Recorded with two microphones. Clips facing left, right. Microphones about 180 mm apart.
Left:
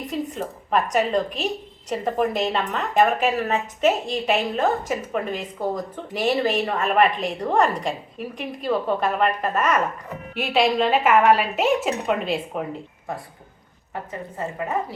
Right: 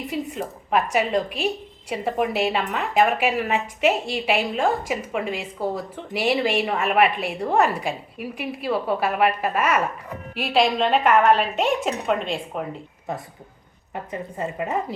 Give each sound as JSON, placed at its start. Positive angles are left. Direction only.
{"t": 0.1, "sound": "a woman's voice", "side_deg": -10}
{"t": 13.9, "sound": "speech", "side_deg": -20}